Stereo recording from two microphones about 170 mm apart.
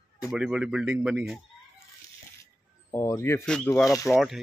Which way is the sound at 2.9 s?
15° left (ahead or behind).